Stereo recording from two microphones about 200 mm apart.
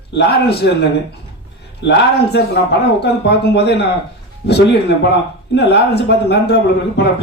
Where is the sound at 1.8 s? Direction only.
60° left (ahead or behind).